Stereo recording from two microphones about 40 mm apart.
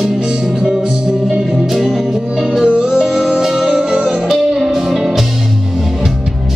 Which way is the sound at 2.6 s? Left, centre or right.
Right.